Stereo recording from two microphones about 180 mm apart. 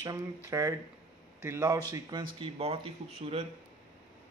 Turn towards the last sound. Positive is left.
turn(degrees=-35)  # may be behind; listen again after turning